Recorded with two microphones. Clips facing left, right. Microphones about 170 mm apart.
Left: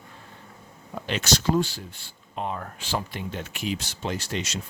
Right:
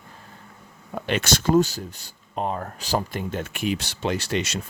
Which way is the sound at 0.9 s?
55° right (ahead or behind).